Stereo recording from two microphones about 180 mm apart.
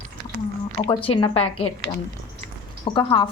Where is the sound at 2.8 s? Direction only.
25° left (ahead or behind).